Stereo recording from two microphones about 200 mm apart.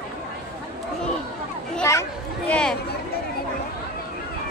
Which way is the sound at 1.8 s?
10° left (ahead or behind).